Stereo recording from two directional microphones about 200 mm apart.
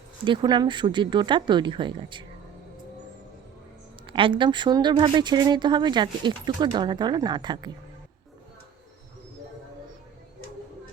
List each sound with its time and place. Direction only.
0.3 s a woman's voice: 20° right (ahead or behind)
4.0 s a woman's voice: 25° right (ahead or behind)